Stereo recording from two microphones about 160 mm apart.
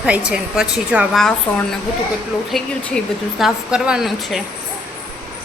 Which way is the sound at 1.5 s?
10° left (ahead or behind).